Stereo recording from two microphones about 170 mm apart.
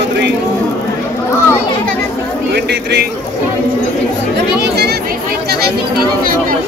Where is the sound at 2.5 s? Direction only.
80° right.